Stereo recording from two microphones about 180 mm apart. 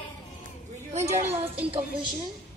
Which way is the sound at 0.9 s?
15° right (ahead or behind).